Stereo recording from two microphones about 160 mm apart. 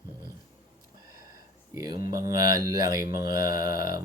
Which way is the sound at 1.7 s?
25° right (ahead or behind).